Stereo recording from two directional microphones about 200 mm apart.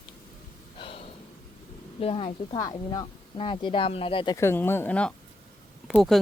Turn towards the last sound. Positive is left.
turn(degrees=0)  # may be behind; listen again after turning